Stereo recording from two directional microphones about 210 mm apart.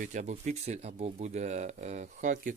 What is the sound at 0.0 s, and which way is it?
Speech, 35° right (ahead or behind).